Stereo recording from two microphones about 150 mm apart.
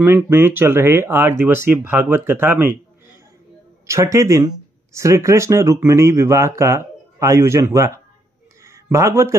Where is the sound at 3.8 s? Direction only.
20° right (ahead or behind).